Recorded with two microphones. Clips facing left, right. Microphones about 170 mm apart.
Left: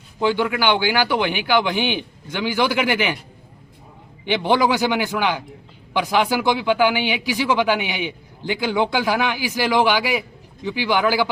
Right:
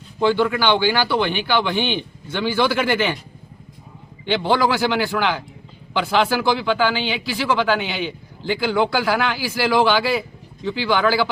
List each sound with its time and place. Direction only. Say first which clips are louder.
0.2 s speech: right 2 dB; 10° left (ahead or behind)
4.3 s speech: even; 15° left (ahead or behind)